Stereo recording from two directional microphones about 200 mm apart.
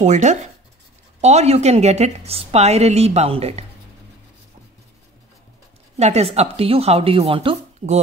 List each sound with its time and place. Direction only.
0.0 s a woman's voice: 35° right (ahead or behind)
5.9 s a woman's voice: 35° right (ahead or behind)